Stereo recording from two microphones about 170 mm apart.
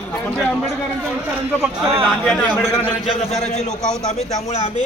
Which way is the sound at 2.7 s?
20° left (ahead or behind).